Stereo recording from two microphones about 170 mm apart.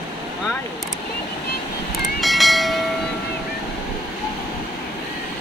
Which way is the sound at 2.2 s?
Centre (ahead or behind).